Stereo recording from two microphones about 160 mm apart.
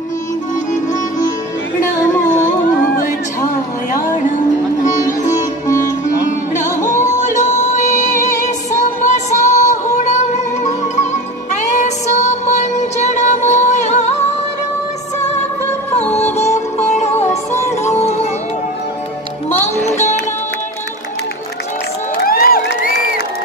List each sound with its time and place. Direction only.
1.8 s music: 20° left (ahead or behind)
6.8 s music: 50° left (ahead or behind)
11.5 s music: 45° left (ahead or behind)
16.0 s music: 15° left (ahead or behind)
16.3 s music: 45° left (ahead or behind)
19.6 s music: 45° left (ahead or behind)
22.2 s crowd: 65° left (ahead or behind)